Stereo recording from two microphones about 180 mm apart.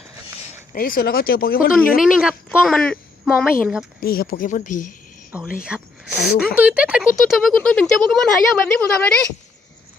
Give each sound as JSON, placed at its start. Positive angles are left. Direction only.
{"t": 0.7, "sound": "speech", "side_deg": 50}
{"t": 2.0, "sound": "speech", "side_deg": -5}
{"t": 4.0, "sound": "speech", "side_deg": 55}
{"t": 5.6, "sound": "speech", "side_deg": -5}